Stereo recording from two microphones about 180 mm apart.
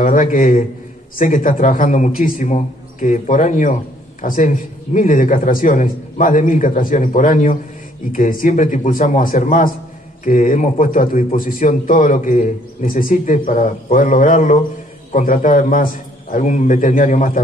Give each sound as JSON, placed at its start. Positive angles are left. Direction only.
{"t": 0.0, "sound": "a man's voice", "side_deg": 50}